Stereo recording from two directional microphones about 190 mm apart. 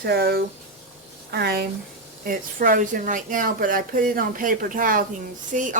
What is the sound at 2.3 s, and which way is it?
A woman's voice, 45° right (ahead or behind).